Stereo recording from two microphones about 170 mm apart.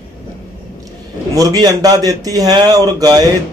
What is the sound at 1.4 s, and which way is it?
Speech, 20° right (ahead or behind).